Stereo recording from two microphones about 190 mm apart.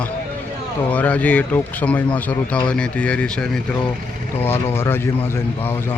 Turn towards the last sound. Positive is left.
turn(degrees=10)  # may be behind; listen again after turning